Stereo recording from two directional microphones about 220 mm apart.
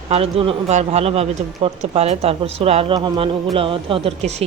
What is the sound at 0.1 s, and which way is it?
Speech, 25° right (ahead or behind).